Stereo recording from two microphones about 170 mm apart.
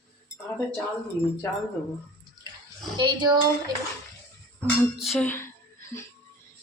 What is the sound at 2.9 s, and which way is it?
Speech, 25° right (ahead or behind).